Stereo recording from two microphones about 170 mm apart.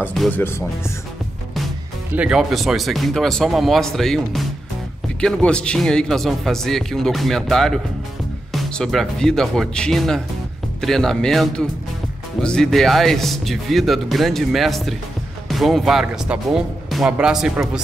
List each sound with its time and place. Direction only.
0.4 s speech: 15° left (ahead or behind)
2.1 s a man's voice: 5° right (ahead or behind)